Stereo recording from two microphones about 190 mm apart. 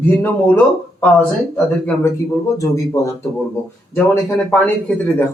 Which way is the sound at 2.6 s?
15° left (ahead or behind).